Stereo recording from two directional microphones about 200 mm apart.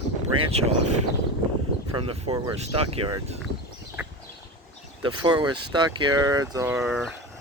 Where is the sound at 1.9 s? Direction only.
25° right (ahead or behind).